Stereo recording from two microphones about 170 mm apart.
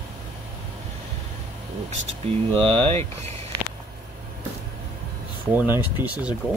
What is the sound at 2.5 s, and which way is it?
Speech, 30° right (ahead or behind).